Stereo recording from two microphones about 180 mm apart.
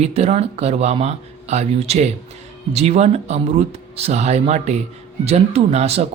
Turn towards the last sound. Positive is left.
turn(degrees=-35)  # may be behind; listen again after turning